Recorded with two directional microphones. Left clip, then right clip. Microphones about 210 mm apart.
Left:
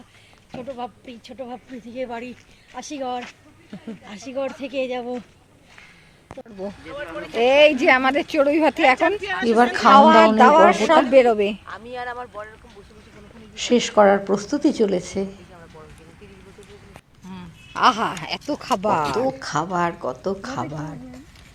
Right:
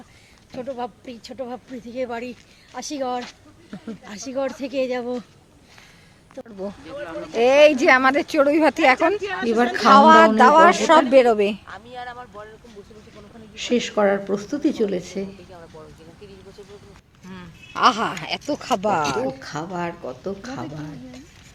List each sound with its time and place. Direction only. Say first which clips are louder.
0.5 s speech: right 2 dB; 30° right (ahead or behind)
3.2 s a sound: right 1 dB; 5° left (ahead or behind)
4.3 s a woman's voice: right 1 dB; 20° right (ahead or behind)
6.6 s speech: even; 5° left (ahead or behind)
11.6 s speech: left 4 dB; 35° left (ahead or behind)
13.6 s speech: left 4 dB; centre (ahead or behind)
17.7 s speech: even; centre (ahead or behind)